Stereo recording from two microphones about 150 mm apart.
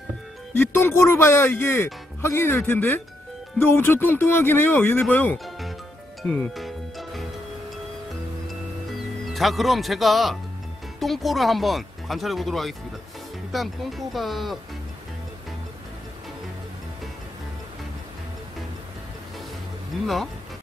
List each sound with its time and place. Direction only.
0.6 s speech: 15° left (ahead or behind)
6.2 s music: 5° left (ahead or behind)
8.5 s music: centre (ahead or behind)
11.0 s speech: centre (ahead or behind)